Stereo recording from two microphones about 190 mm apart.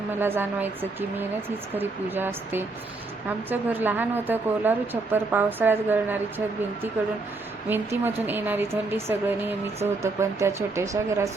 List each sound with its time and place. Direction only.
0.2 s speech: 10° right (ahead or behind)
7.7 s speech: 10° right (ahead or behind)